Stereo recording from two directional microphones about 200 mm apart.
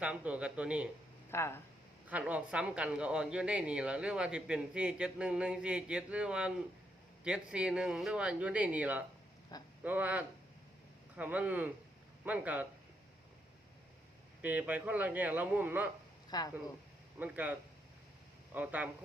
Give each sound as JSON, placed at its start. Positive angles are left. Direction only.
{"t": 0.0, "sound": "speech", "side_deg": -5}
{"t": 1.3, "sound": "speech", "side_deg": 10}
{"t": 2.0, "sound": "speech", "side_deg": -5}
{"t": 9.5, "sound": "speech", "side_deg": 20}
{"t": 9.8, "sound": "a man's voice", "side_deg": -10}
{"t": 14.4, "sound": "a man's voice", "side_deg": -10}
{"t": 16.3, "sound": "speech", "side_deg": 20}
{"t": 17.2, "sound": "a man's voice", "side_deg": -10}